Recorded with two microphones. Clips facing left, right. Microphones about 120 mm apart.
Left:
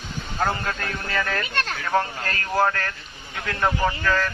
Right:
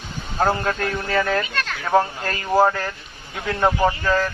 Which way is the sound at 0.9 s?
25° right (ahead or behind).